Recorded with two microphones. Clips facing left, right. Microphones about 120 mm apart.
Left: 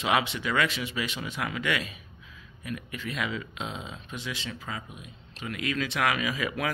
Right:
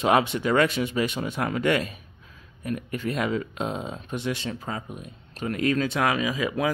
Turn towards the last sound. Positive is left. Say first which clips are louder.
# right 5 dB
turn(degrees=-25)  # may be behind; listen again after turning